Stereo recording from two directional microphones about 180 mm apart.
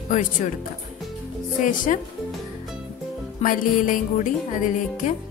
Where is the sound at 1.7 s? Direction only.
45° left (ahead or behind).